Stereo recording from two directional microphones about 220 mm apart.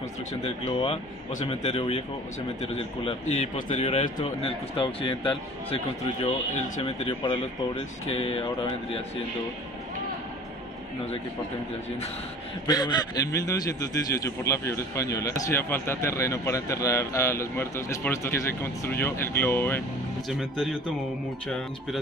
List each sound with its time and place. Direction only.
0.3 s speech: 25° left (ahead or behind)
12.6 s a man's voice: 20° left (ahead or behind); by 20.7 s centre (ahead or behind)